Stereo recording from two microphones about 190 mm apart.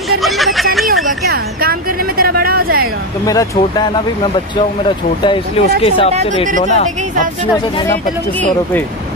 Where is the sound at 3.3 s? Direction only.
20° left (ahead or behind).